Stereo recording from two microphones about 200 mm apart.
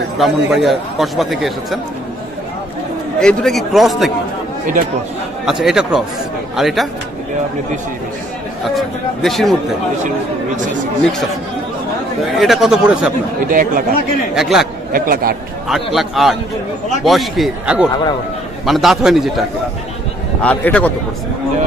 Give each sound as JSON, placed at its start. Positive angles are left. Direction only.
{"t": 0.2, "sound": "a man's voice", "side_deg": 0}
{"t": 3.2, "sound": "a man's voice", "side_deg": 5}
{"t": 5.4, "sound": "a man's voice", "side_deg": 0}
{"t": 8.6, "sound": "a man's voice", "side_deg": 0}
{"t": 12.4, "sound": "a man's voice", "side_deg": 0}
{"t": 13.5, "sound": "speech", "side_deg": -45}
{"t": 14.3, "sound": "a man's voice", "side_deg": 0}
{"t": 14.9, "sound": "a man's voice", "side_deg": -45}
{"t": 15.7, "sound": "a man's voice", "side_deg": 0}
{"t": 20.4, "sound": "speech", "side_deg": 5}